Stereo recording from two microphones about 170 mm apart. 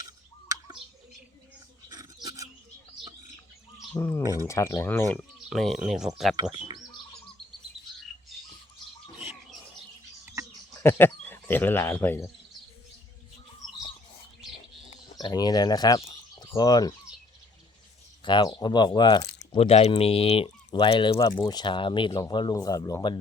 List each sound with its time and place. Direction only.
0.0 s bird: 20° right (ahead or behind)
2.2 s a sound: 20° right (ahead or behind)
3.9 s speech: 15° left (ahead or behind)
5.5 s speech: centre (ahead or behind)
10.8 s speech: 15° left (ahead or behind)
14.8 s speech: 25° left (ahead or behind)
16.0 s bird: 35° left (ahead or behind)
16.5 s speech: 25° left (ahead or behind)
18.3 s speech: 25° left (ahead or behind)
19.5 s speech: 35° left (ahead or behind); by 23.1 s 20° left (ahead or behind)